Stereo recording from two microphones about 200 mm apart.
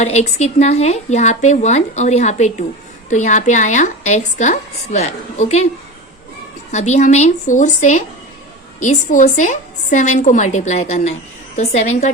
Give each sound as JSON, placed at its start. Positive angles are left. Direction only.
{"t": 0.0, "sound": "a woman's voice", "side_deg": 35}
{"t": 6.7, "sound": "a woman's voice", "side_deg": 35}